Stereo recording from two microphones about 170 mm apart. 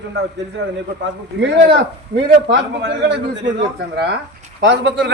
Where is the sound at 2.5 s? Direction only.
90° right.